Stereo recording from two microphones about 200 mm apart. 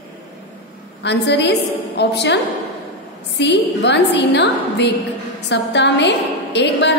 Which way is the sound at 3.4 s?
60° left (ahead or behind).